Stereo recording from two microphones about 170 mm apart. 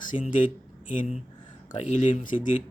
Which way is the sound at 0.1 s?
50° left (ahead or behind).